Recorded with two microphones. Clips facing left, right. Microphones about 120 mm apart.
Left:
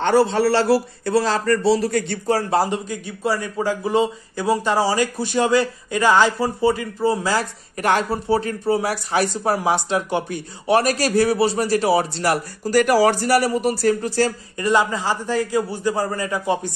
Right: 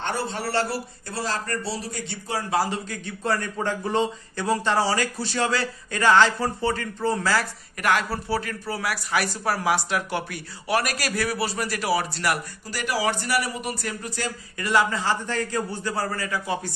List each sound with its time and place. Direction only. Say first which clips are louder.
0.0 s a man's voice: left 12 dB; 90° left; by 2.1 s 70° left (ahead or behind)
2.2 s speech: left 5 dB; 40° left (ahead or behind)
2.6 s a man's voice: left 5 dB; 15° left (ahead or behind)
7.3 s speech: left 3 dB; 30° left (ahead or behind)
12.6 s speech: left 11 dB; 45° left (ahead or behind)
14.6 s a man's voice: left 4 dB; 20° left (ahead or behind)